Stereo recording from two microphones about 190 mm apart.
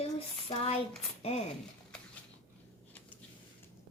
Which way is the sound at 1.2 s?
30° left (ahead or behind).